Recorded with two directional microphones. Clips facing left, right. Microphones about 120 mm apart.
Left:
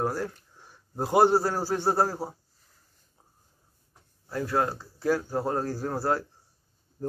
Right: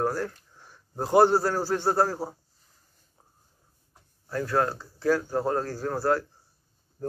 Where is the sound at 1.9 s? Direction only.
25° left (ahead or behind).